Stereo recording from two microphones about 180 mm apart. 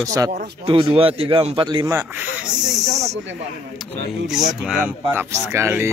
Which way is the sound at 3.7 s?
Centre (ahead or behind).